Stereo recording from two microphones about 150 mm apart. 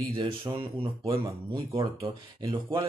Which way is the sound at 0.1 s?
35° right (ahead or behind).